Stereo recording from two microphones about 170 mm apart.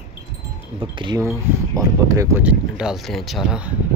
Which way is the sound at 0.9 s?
25° right (ahead or behind).